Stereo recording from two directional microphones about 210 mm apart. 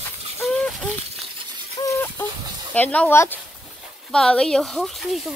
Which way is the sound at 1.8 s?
15° left (ahead or behind).